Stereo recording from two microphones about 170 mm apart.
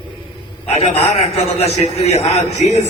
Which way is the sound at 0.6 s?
40° left (ahead or behind).